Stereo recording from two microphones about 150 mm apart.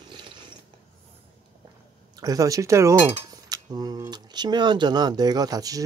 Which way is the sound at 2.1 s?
25° right (ahead or behind).